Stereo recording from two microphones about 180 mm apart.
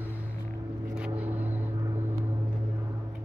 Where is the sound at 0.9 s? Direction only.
5° right (ahead or behind).